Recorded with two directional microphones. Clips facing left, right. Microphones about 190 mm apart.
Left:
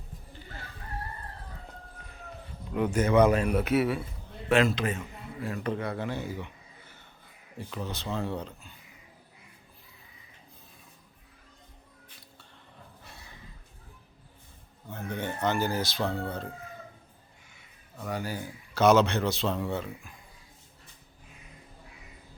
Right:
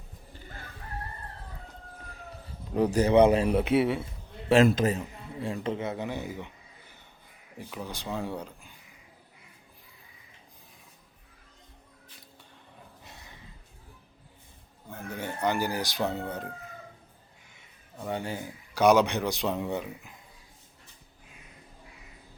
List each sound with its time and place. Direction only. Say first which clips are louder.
2.7 s a man's voice: right 2 dB; 35° right (ahead or behind)
4.4 s a man's voice: right 4 dB; 40° right (ahead or behind); by 8.7 s 10° right (ahead or behind)
13.1 s a sound: even; 20° right (ahead or behind)
14.8 s speech: left 2 dB; 10° right (ahead or behind)
17.9 s speech: right 1 dB; 25° right (ahead or behind)
18.7 s speech: even; 15° right (ahead or behind)